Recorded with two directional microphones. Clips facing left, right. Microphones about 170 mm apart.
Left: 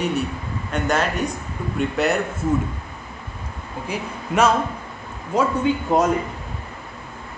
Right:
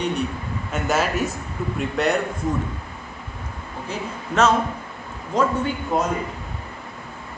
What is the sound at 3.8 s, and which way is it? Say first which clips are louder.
Speech: left 2 dB; 10° left (ahead or behind).